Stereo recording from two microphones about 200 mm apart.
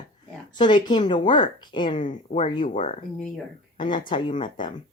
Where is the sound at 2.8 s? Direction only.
40° left (ahead or behind).